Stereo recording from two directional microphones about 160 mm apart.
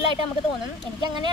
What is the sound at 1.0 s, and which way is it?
Speech, 30° right (ahead or behind).